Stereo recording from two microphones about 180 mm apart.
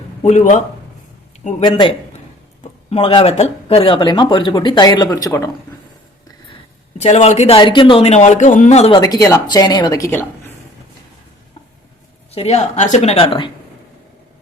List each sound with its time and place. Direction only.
0.2 s speech: 40° left (ahead or behind)
1.6 s speech: 25° left (ahead or behind)
2.9 s speech: 30° left (ahead or behind)
7.0 s speech: 40° left (ahead or behind)
9.0 s speech: 20° left (ahead or behind)
12.3 s speech: 35° left (ahead or behind)